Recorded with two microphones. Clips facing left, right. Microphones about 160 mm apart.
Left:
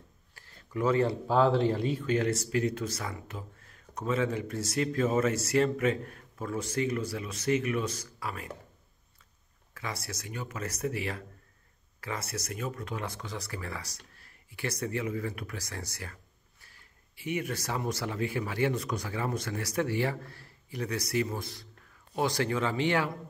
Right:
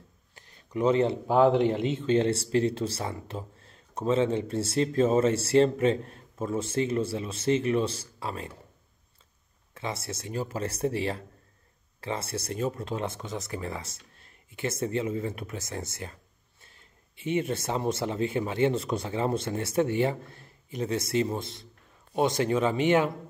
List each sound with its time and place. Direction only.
0.3 s speech: 20° right (ahead or behind)
9.8 s speech: 25° right (ahead or behind)